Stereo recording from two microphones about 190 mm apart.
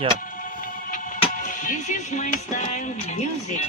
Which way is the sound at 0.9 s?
45° left (ahead or behind).